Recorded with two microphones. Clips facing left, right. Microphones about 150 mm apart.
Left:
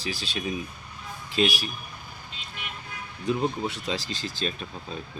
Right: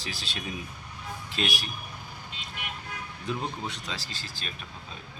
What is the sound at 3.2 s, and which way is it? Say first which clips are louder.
Speech: left 7 dB; 5° left (ahead or behind).